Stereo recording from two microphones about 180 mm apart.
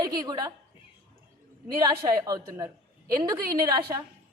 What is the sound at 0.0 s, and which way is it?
Speech, 20° right (ahead or behind).